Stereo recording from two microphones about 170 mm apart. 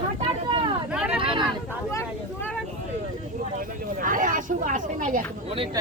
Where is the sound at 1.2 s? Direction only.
30° right (ahead or behind).